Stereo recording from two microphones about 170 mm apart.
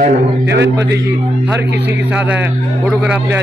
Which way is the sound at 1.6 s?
90° right.